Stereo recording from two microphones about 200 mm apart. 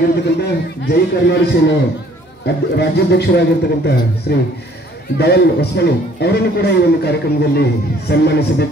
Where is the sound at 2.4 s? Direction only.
55° left (ahead or behind).